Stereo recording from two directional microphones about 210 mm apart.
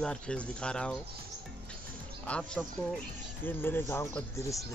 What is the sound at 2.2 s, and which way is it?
Speech, 5° left (ahead or behind).